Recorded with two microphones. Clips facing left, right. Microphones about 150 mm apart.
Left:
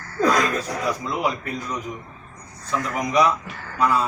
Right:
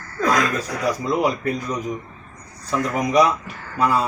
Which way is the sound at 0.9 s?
35° right (ahead or behind).